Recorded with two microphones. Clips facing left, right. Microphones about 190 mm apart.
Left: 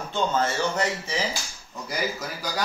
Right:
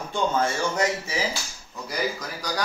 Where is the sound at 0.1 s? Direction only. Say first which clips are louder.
Right 1 dB; 10° right (ahead or behind).